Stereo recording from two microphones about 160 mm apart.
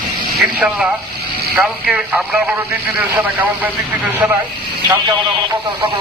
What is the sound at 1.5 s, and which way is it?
Speech, 5° right (ahead or behind).